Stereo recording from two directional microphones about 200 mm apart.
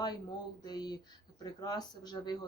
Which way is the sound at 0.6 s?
20° left (ahead or behind).